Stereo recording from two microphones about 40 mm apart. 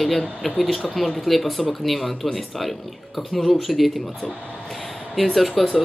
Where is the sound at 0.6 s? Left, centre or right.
Centre.